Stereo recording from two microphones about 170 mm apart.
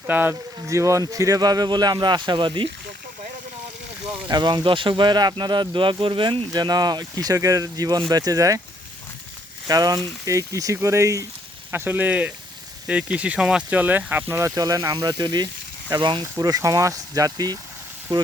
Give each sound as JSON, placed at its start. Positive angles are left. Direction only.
{"t": 0.1, "sound": "speech", "side_deg": -10}
{"t": 4.3, "sound": "speech", "side_deg": -25}
{"t": 9.6, "sound": "speech", "side_deg": -20}